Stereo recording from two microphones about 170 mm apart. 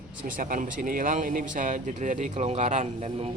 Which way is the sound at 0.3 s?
55° right (ahead or behind).